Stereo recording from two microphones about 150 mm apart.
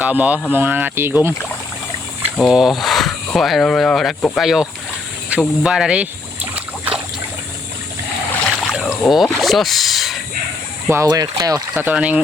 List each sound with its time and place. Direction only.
0.0 s speech: 10° right (ahead or behind)
2.4 s speech: 5° right (ahead or behind)
5.3 s boat: 5° right (ahead or behind)
8.6 s speech: centre (ahead or behind)
10.8 s speech: 20° right (ahead or behind)
11.7 s speech: 15° right (ahead or behind)